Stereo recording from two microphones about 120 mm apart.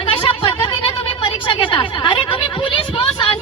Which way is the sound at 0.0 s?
45° left (ahead or behind).